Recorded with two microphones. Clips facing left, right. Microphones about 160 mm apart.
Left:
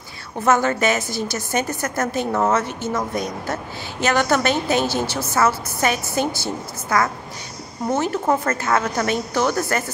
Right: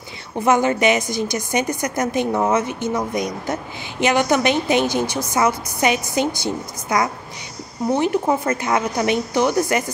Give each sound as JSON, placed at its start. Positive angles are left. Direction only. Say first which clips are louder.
{"t": 0.5, "sound": "a woman's voice", "louder": "right 2 dB", "side_deg": -15}